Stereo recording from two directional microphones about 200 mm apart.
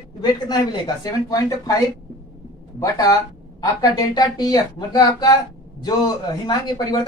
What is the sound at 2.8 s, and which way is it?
A man's voice, 15° left (ahead or behind).